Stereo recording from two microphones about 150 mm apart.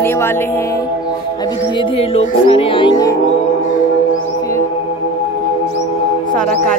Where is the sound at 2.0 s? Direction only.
40° left (ahead or behind).